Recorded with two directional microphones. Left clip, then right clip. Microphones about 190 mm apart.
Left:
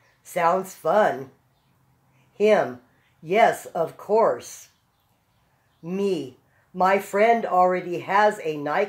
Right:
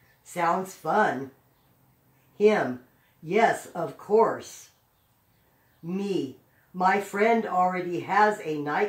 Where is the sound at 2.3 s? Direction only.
45° left (ahead or behind).